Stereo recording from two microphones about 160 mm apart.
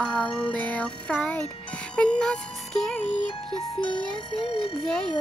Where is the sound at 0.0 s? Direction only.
5° left (ahead or behind).